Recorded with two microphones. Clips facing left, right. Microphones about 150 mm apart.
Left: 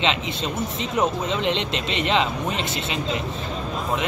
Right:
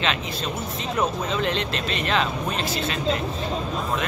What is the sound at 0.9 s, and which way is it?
Speech, 20° left (ahead or behind).